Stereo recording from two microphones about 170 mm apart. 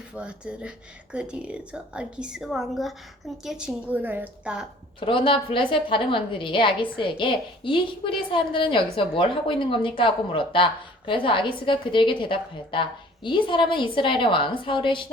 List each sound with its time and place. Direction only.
0.1 s a woman's voice: 5° right (ahead or behind)
4.9 s a woman's voice: 30° left (ahead or behind)